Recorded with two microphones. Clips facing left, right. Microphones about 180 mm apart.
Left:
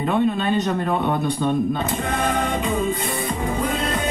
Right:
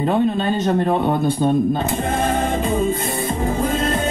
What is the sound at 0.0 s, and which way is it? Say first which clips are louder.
Speech: right 2 dB; 40° right (ahead or behind).